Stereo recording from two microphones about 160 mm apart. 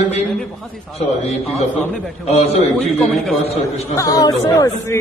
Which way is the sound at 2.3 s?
40° left (ahead or behind).